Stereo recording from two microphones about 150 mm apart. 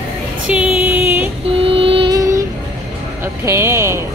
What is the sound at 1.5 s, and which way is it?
Music, 40° right (ahead or behind).